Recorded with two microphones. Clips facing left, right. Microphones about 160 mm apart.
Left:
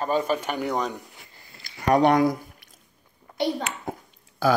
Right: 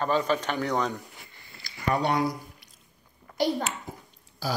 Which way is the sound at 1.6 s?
70° left (ahead or behind).